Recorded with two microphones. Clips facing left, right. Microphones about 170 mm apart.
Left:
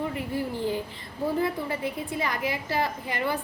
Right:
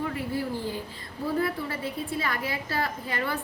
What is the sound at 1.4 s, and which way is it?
A woman's voice, 20° left (ahead or behind).